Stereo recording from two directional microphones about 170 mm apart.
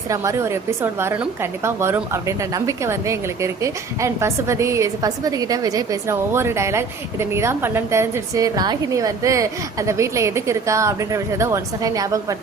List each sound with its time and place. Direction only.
0.1 s a woman's voice: 15° right (ahead or behind)